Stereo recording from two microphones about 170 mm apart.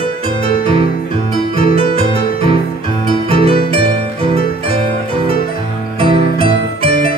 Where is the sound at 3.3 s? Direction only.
35° right (ahead or behind).